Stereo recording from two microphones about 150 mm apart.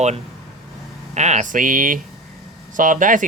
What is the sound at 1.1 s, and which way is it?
Speech, 50° right (ahead or behind).